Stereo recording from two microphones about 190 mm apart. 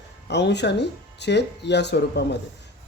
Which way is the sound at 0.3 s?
65° left (ahead or behind).